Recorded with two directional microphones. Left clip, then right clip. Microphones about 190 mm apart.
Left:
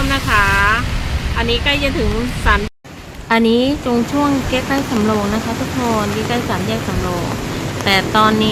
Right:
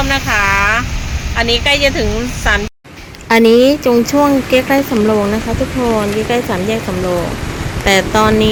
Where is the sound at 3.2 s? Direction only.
10° right (ahead or behind).